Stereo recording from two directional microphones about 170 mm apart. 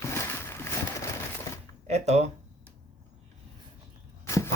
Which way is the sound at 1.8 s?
40° right (ahead or behind).